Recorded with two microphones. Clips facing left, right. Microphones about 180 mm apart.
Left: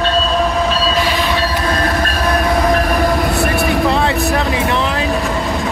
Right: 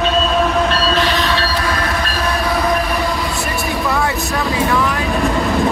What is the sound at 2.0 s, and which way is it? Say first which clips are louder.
Train: left 3 dB; 50° left (ahead or behind).